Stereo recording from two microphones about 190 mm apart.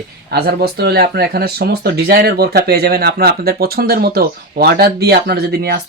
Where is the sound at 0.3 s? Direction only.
55° right (ahead or behind).